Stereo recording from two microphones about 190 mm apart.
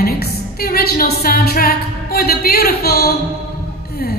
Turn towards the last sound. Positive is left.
turn(degrees=55)  # may be behind; listen again after turning